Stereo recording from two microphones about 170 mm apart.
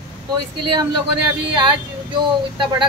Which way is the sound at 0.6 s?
25° right (ahead or behind).